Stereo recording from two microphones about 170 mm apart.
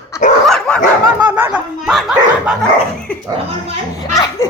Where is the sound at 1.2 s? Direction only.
10° right (ahead or behind).